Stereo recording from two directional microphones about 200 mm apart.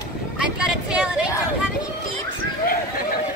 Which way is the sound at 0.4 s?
5° right (ahead or behind).